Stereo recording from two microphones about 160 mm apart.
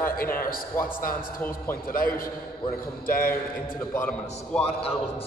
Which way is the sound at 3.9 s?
5° left (ahead or behind).